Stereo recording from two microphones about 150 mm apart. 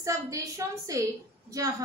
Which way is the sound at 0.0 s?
20° right (ahead or behind).